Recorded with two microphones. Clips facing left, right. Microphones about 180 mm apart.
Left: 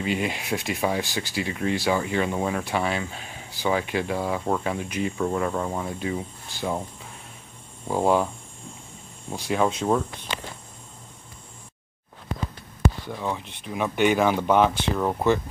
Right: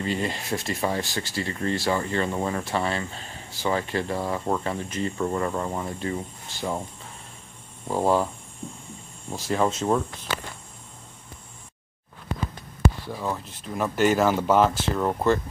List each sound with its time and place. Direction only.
0.0 s speech: 5° left (ahead or behind)
7.9 s speech: 5° right (ahead or behind)
9.3 s speech: centre (ahead or behind)
13.1 s speech: 5° right (ahead or behind)